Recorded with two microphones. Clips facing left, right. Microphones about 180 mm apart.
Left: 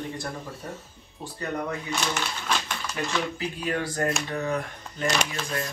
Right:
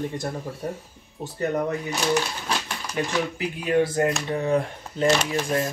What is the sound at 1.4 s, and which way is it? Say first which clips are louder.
Speech: right 6 dB; 40° right (ahead or behind).